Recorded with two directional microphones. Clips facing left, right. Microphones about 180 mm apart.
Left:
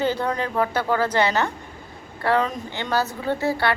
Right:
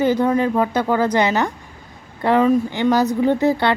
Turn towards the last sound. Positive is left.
turn(degrees=-20)  # may be behind; listen again after turning